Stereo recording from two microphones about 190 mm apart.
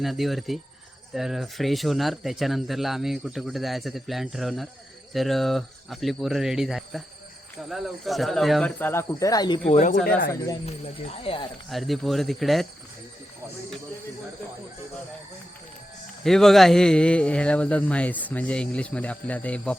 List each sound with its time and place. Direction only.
0.0 s speech: centre (ahead or behind); by 9.6 s 20° left (ahead or behind)
9.6 s speech: 40° left (ahead or behind)
11.7 s speech: centre (ahead or behind)
16.2 s speech: centre (ahead or behind)